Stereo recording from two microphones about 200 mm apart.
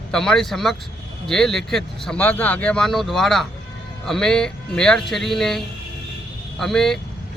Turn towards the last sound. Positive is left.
turn(degrees=0)  # may be behind; listen again after turning